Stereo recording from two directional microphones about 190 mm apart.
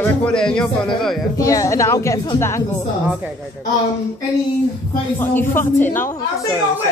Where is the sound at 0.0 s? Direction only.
5° left (ahead or behind).